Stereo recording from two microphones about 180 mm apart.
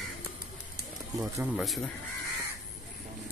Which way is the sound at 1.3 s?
5° right (ahead or behind).